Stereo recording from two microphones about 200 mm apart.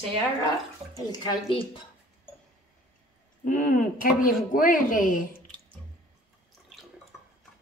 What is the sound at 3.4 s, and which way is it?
Speech, 45° left (ahead or behind).